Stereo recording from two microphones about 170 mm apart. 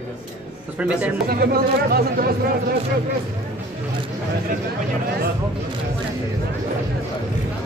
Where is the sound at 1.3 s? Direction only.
65° right (ahead or behind).